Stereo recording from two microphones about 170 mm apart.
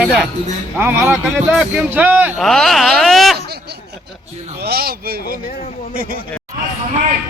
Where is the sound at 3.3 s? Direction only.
70° right (ahead or behind).